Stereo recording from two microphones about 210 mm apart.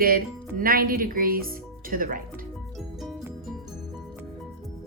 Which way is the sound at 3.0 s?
Centre (ahead or behind).